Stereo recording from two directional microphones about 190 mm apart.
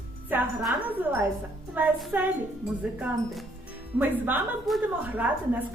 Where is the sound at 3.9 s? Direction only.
10° right (ahead or behind).